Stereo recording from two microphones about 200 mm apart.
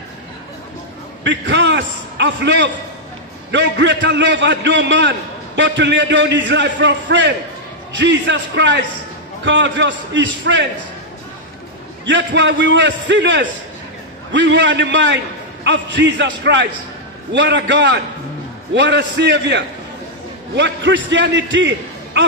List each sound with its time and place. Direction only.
1.2 s a man's voice: 60° right (ahead or behind)
12.1 s a man's voice: 65° right (ahead or behind)